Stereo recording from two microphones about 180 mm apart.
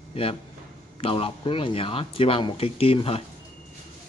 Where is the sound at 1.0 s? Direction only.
30° left (ahead or behind).